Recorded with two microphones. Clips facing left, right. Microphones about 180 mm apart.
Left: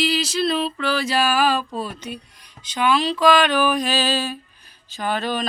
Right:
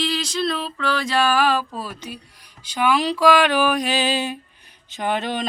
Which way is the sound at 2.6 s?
10° right (ahead or behind).